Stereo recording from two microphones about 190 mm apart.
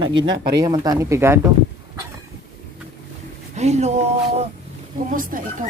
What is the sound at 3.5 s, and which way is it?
Speech, 35° right (ahead or behind).